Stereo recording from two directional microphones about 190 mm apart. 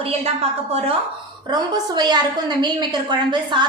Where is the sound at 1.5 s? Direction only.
20° right (ahead or behind).